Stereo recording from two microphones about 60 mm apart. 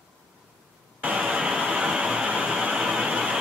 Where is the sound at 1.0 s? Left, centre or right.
Centre.